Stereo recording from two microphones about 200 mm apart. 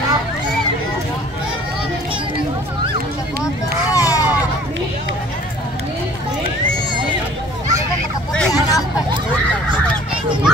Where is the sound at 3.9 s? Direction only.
15° left (ahead or behind).